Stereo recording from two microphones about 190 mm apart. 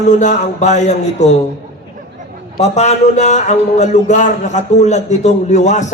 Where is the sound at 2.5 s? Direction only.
35° left (ahead or behind).